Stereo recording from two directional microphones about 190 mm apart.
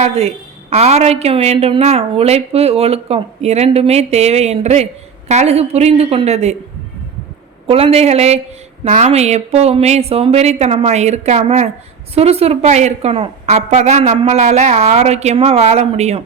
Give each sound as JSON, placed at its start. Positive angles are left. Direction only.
{"t": 0.0, "sound": "a woman's voice", "side_deg": -35}
{"t": 7.7, "sound": "a woman's voice", "side_deg": -30}